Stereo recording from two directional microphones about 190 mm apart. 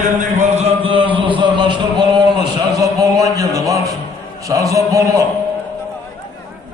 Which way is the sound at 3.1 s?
20° right (ahead or behind).